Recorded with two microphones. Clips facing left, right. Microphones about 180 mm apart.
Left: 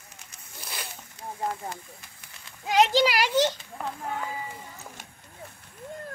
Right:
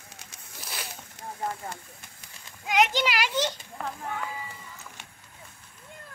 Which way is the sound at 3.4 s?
15° left (ahead or behind).